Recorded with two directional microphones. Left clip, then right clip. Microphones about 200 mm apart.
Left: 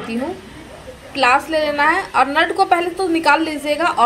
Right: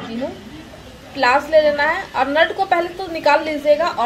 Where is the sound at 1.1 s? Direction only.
50° left (ahead or behind).